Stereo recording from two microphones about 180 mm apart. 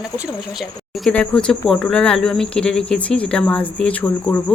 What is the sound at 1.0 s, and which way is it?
Speech, 5° left (ahead or behind).